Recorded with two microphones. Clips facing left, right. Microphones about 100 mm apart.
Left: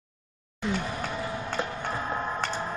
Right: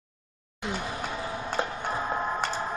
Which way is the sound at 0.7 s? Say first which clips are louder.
Left 2 dB; 10° right (ahead or behind).